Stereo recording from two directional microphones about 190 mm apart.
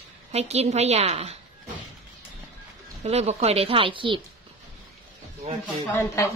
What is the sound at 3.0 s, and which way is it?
A woman's voice, 35° right (ahead or behind).